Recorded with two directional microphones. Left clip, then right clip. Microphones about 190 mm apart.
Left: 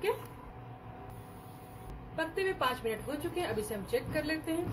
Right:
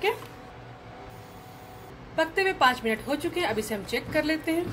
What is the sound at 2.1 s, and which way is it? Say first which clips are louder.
A woman's voice: right 9 dB; 50° right (ahead or behind).